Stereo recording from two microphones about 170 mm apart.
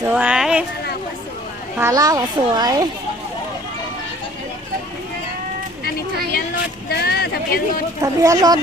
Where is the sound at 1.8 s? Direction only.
20° right (ahead or behind).